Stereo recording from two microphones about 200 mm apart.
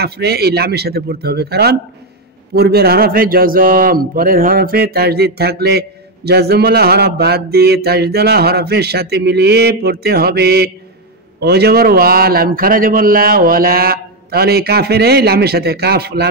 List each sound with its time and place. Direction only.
0.0 s a man's voice: 55° right (ahead or behind)